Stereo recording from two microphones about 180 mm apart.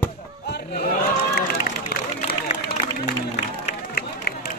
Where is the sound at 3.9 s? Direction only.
60° left (ahead or behind).